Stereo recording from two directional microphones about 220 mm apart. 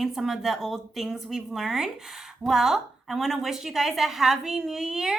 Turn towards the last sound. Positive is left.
turn(degrees=0)  # may be behind; listen again after turning